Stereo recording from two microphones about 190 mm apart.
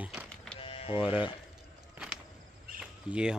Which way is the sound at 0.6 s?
30° left (ahead or behind).